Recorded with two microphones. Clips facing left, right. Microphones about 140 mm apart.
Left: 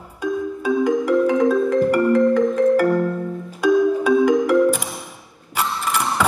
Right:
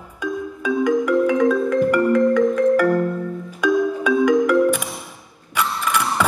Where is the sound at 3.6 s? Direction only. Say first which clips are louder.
Left 3 dB; 35° left (ahead or behind).